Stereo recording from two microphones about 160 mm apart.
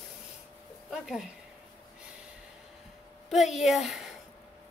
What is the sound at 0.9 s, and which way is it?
Speech, 5° right (ahead or behind).